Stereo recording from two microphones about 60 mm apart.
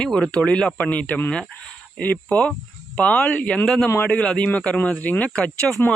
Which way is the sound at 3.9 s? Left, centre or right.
Left.